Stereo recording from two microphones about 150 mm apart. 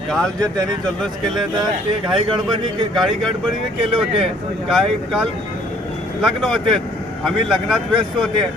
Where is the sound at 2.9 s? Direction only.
Centre (ahead or behind).